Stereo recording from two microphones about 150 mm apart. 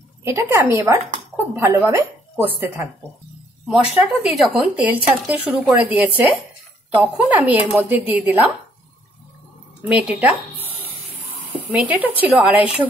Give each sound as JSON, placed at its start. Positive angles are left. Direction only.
{"t": 0.2, "sound": "speech", "side_deg": -20}
{"t": 9.8, "sound": "speech", "side_deg": -10}
{"t": 11.7, "sound": "speech", "side_deg": -10}